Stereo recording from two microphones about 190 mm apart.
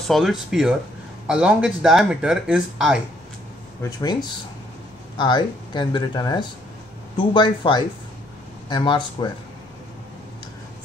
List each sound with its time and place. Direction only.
0.1 s speech: centre (ahead or behind)
4.0 s speech: 20° left (ahead or behind)